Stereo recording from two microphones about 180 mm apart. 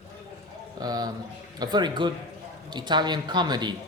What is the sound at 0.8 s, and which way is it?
A man's voice, 20° right (ahead or behind).